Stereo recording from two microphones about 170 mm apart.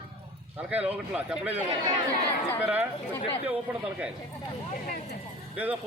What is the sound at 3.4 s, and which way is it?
Speech, 10° right (ahead or behind).